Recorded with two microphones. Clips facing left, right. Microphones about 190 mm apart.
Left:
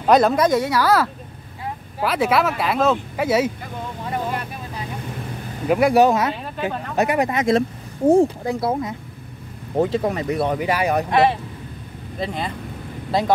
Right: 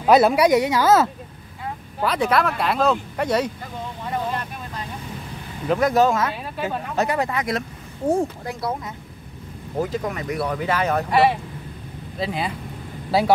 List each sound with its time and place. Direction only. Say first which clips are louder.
0.0 s speech: even; 5° right (ahead or behind)
2.0 s speech: left 1 dB; 5° left (ahead or behind)
5.7 s speech: left 3 dB; 10° left (ahead or behind)
6.5 s speech: left 1 dB; 5° right (ahead or behind)
7.0 s speech: left 4 dB; 15° left (ahead or behind)
9.8 s speech: left 5 dB; 30° left (ahead or behind)
10.7 s speech: right 1 dB; 15° left (ahead or behind)
12.2 s speech: even; 5° right (ahead or behind)